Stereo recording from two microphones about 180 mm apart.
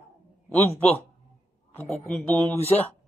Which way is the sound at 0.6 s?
10° left (ahead or behind).